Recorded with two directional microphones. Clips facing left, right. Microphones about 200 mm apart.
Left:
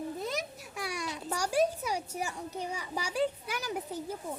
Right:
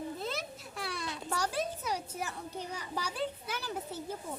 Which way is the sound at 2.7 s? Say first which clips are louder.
Left 5 dB; 10° left (ahead or behind).